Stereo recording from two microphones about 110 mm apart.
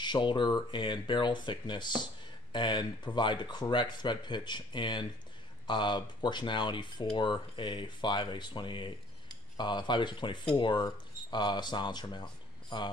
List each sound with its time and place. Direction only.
0.0 s speech: 45° left (ahead or behind)